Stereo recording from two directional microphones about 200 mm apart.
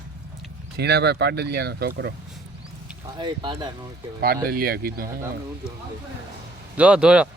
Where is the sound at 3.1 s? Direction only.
25° right (ahead or behind).